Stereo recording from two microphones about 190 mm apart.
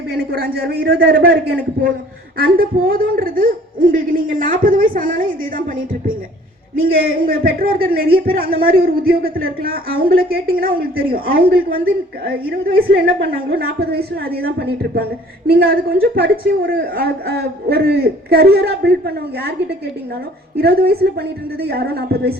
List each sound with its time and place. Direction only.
0.1 s a woman's voice: 50° right (ahead or behind)
6.9 s a woman's voice: 50° right (ahead or behind)
20.6 s a woman's voice: 55° right (ahead or behind)